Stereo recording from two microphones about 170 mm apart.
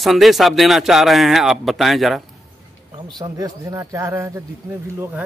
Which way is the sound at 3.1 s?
20° right (ahead or behind).